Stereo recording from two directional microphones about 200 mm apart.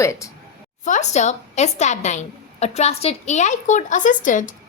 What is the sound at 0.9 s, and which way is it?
A woman's voice, 35° left (ahead or behind).